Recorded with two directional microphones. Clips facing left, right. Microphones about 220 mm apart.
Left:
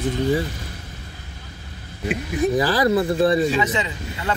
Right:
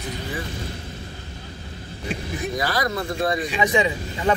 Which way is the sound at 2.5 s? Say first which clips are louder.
Left 6 dB; 30° left (ahead or behind).